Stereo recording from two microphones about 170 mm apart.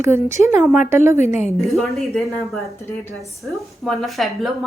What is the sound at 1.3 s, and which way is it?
Speech, 40° left (ahead or behind).